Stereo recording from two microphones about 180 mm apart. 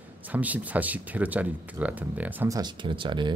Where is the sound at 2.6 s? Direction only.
25° right (ahead or behind).